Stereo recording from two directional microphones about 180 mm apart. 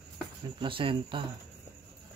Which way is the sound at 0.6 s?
30° right (ahead or behind).